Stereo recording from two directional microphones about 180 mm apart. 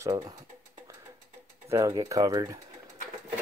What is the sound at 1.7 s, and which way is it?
Speech, 15° right (ahead or behind).